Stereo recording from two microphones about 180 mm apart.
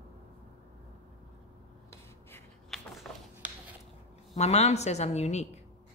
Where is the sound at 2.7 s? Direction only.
Centre (ahead or behind).